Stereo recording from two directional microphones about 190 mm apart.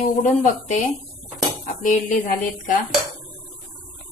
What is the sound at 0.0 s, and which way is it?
A woman's voice, 40° left (ahead or behind).